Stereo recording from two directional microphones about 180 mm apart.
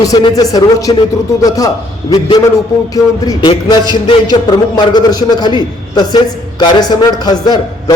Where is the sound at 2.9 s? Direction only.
20° left (ahead or behind).